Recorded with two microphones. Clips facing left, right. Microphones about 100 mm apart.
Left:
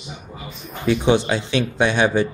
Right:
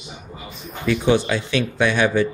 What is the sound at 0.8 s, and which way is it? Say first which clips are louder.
Speech: left 1 dB; 25° left (ahead or behind).